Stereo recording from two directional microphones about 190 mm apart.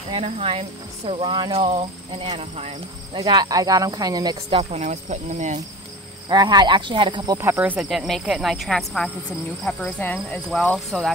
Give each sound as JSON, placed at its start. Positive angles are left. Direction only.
{"t": 0.1, "sound": "speech", "side_deg": -30}
{"t": 3.2, "sound": "speech", "side_deg": -20}
{"t": 6.2, "sound": "speech", "side_deg": -20}
{"t": 9.7, "sound": "cricket", "side_deg": 5}